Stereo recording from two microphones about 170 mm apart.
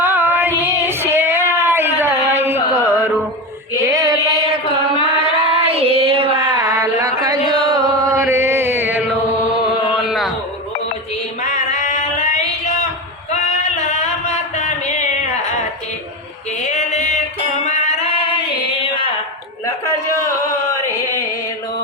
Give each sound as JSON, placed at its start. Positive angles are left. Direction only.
{"t": 0.0, "sound": "female singing", "side_deg": -15}
{"t": 5.4, "sound": "female singing", "side_deg": -35}
{"t": 5.7, "sound": "a sound", "side_deg": -35}
{"t": 7.2, "sound": "chant", "side_deg": -25}
{"t": 11.4, "sound": "a sound", "side_deg": 45}
{"t": 16.6, "sound": "singing", "side_deg": 45}
{"t": 17.7, "sound": "music", "side_deg": 40}